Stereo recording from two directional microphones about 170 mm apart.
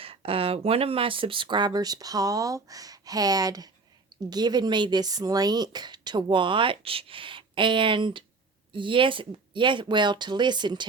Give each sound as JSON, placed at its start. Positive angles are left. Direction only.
{"t": 0.0, "sound": "speech", "side_deg": -35}